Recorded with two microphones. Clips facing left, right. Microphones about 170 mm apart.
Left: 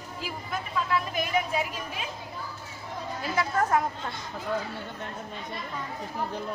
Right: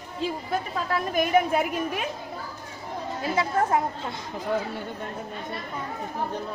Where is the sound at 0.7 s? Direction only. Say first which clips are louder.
Right 1 dB; 40° right (ahead or behind); by 2.0 s 60° right (ahead or behind).